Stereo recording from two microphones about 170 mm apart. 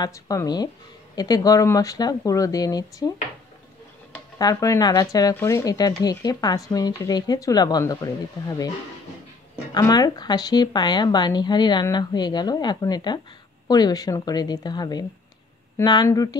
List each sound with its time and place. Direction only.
0.0 s speech: 20° left (ahead or behind)
4.4 s speech: 20° left (ahead or behind)
9.8 s speech: 20° left (ahead or behind)